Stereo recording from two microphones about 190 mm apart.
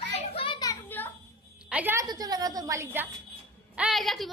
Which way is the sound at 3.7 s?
5° right (ahead or behind).